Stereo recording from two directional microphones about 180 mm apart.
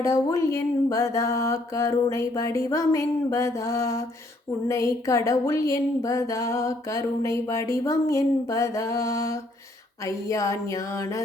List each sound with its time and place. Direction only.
0.0 s speech: 15° left (ahead or behind)